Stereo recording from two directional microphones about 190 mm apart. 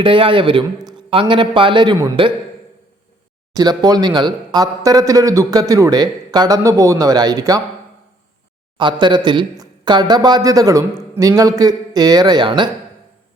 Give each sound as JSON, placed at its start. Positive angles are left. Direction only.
{"t": 0.0, "sound": "speech", "side_deg": -30}
{"t": 3.6, "sound": "speech", "side_deg": -20}
{"t": 8.8, "sound": "speech", "side_deg": -25}